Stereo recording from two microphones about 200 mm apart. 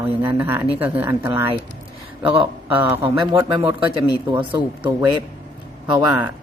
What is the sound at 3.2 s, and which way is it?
Speech, 25° right (ahead or behind).